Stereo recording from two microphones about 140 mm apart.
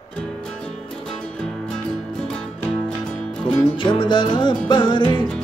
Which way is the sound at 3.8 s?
35° left (ahead or behind).